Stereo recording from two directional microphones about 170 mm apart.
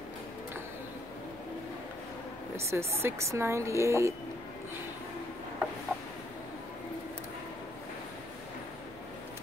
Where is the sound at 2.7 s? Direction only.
15° right (ahead or behind).